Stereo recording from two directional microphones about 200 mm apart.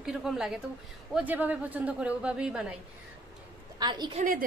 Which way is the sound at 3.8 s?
20° right (ahead or behind).